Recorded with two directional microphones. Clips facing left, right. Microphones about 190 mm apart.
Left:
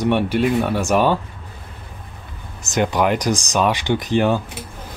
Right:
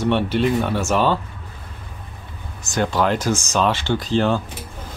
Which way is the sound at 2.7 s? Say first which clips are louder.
Left 2 dB; 15° left (ahead or behind).